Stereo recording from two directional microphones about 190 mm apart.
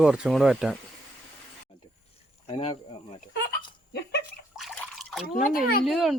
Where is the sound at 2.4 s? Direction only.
30° left (ahead or behind).